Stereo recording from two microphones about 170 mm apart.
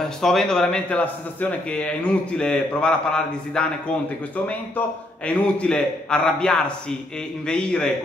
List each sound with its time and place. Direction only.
0.2 s speech: 5° left (ahead or behind)